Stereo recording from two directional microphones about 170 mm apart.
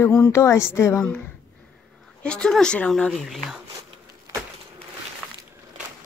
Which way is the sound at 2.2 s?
5° left (ahead or behind).